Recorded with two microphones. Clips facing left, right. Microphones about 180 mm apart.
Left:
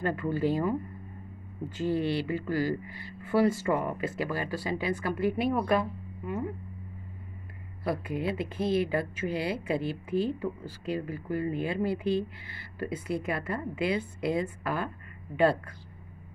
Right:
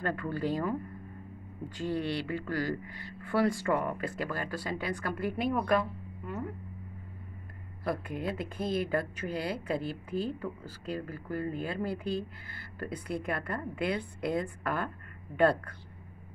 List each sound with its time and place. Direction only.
0.0 s speech: 5° left (ahead or behind)
1.8 s speech: 5° left (ahead or behind)
7.8 s speech: 5° left (ahead or behind)